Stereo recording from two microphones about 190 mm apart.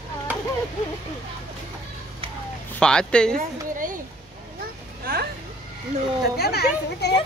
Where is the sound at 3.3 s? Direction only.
45° right (ahead or behind).